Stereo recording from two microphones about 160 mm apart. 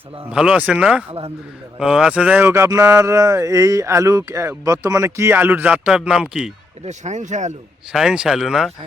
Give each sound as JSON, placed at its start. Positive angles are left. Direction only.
{"t": 0.3, "sound": "speech", "side_deg": -5}
{"t": 6.8, "sound": "speech", "side_deg": -45}
{"t": 7.9, "sound": "speech", "side_deg": -5}